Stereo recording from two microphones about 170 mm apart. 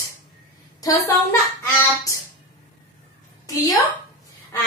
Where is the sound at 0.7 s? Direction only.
20° left (ahead or behind).